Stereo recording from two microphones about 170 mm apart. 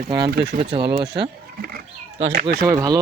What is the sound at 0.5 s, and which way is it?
Speech, 55° right (ahead or behind).